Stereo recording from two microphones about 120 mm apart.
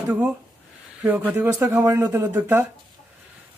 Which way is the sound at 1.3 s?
15° right (ahead or behind).